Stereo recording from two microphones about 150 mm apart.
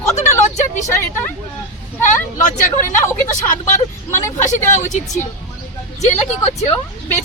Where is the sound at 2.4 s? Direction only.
60° left (ahead or behind).